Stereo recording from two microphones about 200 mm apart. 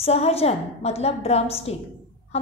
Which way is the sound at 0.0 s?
30° left (ahead or behind).